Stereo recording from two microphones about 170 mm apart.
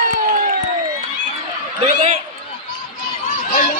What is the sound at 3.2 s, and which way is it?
Run, 55° left (ahead or behind).